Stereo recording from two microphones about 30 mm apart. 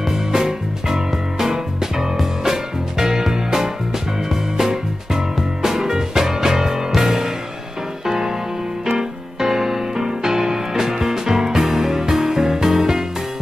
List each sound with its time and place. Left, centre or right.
0.1 s music: centre
4.3 s music: centre
8.8 s music: centre